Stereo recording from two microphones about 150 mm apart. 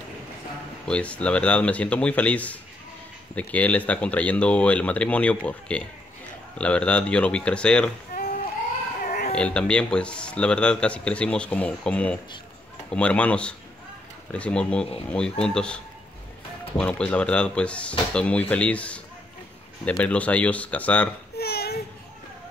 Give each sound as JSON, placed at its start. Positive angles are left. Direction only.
{"t": 0.8, "sound": "speech", "side_deg": 10}
{"t": 9.0, "sound": "baby cry", "side_deg": 75}
{"t": 9.3, "sound": "speech", "side_deg": 5}
{"t": 21.4, "sound": "a sound", "side_deg": 90}